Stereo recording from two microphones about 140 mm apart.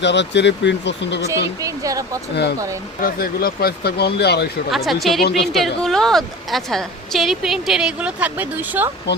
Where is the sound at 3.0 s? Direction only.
90° left.